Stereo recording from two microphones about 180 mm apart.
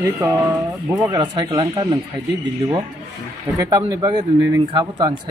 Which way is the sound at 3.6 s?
20° right (ahead or behind).